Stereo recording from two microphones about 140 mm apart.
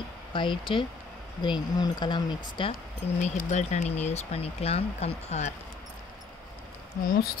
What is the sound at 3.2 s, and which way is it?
Speech, 55° left (ahead or behind).